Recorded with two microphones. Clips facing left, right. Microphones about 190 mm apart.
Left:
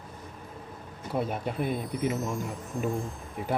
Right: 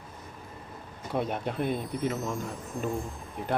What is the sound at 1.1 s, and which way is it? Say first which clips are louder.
Speech: even; 5° left (ahead or behind).